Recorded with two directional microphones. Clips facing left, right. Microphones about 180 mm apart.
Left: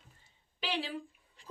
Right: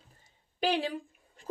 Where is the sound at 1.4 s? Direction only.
45° right (ahead or behind).